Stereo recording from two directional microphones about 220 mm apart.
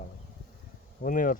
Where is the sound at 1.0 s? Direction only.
40° left (ahead or behind).